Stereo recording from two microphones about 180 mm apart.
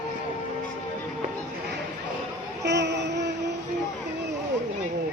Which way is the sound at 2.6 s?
75° right (ahead or behind).